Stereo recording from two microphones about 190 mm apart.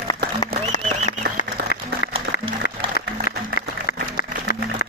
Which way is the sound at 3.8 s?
50° left (ahead or behind).